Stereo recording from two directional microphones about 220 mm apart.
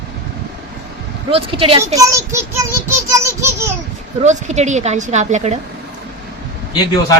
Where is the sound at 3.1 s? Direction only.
15° right (ahead or behind).